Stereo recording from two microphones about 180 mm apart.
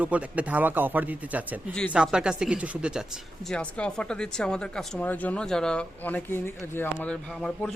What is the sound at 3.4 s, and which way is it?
Speech, 5° left (ahead or behind).